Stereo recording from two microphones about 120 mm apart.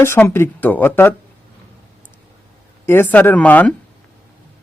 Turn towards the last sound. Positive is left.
turn(degrees=15)  # may be behind; listen again after turning